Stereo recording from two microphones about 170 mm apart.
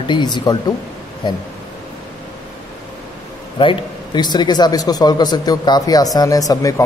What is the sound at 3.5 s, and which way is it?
A man's voice, 30° left (ahead or behind).